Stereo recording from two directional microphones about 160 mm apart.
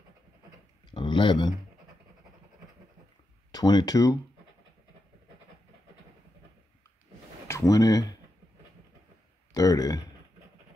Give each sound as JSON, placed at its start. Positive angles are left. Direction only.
{"t": 0.9, "sound": "a sound", "side_deg": 30}
{"t": 3.5, "sound": "speech", "side_deg": 25}
{"t": 7.4, "sound": "speech", "side_deg": 20}
{"t": 9.5, "sound": "speech", "side_deg": 20}